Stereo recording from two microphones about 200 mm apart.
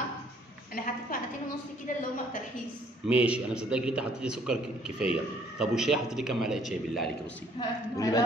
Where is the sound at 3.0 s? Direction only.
5° right (ahead or behind).